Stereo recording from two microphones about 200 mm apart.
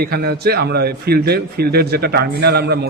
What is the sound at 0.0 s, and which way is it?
A man's voice, 50° right (ahead or behind).